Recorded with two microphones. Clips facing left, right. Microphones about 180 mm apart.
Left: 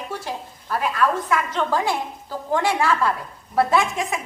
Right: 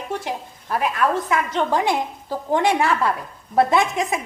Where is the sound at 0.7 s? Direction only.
20° right (ahead or behind).